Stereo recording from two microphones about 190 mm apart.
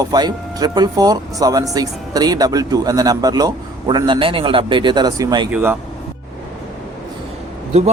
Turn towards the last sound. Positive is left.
turn(degrees=-35)  # may be behind; listen again after turning